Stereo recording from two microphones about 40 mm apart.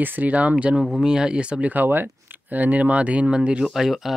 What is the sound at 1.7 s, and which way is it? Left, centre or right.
Speech, right.